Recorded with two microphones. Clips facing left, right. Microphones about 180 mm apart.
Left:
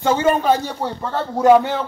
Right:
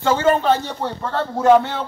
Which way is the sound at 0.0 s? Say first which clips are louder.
Even; 15° left (ahead or behind).